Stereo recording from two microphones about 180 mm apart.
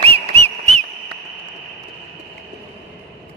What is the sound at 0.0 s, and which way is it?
Whistle, 35° right (ahead or behind).